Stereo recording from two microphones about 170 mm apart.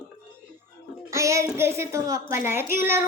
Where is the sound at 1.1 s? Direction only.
15° right (ahead or behind).